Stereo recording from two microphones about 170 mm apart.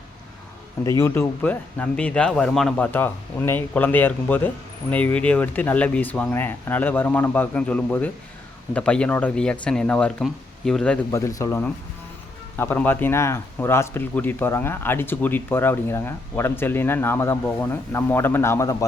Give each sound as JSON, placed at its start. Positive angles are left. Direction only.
{"t": 0.9, "sound": "speech", "side_deg": 15}
{"t": 11.1, "sound": "speech", "side_deg": 20}